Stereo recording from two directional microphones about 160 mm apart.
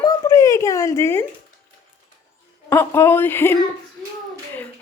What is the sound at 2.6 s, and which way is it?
A woman's voice, 15° left (ahead or behind).